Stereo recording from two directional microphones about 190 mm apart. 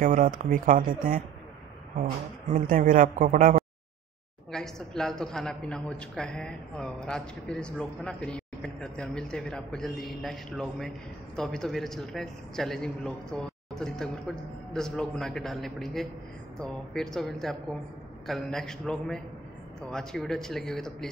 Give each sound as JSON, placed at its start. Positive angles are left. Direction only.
{"t": 0.0, "sound": "speech", "side_deg": -45}
{"t": 2.7, "sound": "speech", "side_deg": -45}
{"t": 4.5, "sound": "a man's voice", "side_deg": 5}